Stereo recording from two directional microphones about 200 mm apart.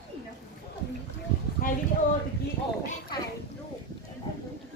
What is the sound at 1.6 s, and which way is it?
Speech, 45° left (ahead or behind).